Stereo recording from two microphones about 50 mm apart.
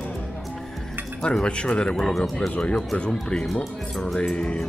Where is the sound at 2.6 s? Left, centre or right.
Centre.